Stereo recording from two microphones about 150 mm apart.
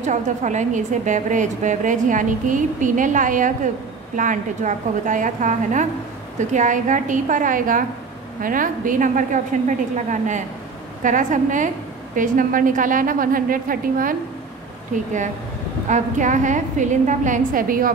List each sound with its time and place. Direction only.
0.0 s a woman's voice: 55° right (ahead or behind)
15.9 s a woman's voice: 55° right (ahead or behind)